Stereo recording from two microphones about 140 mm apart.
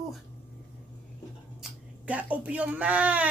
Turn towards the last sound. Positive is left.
turn(degrees=-10)  # may be behind; listen again after turning